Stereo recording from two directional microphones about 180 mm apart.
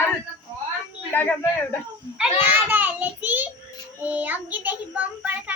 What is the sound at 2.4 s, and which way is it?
A child's voice, 10° right (ahead or behind).